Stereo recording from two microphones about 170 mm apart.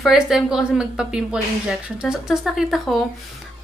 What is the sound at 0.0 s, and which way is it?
A woman's voice, 5° right (ahead or behind).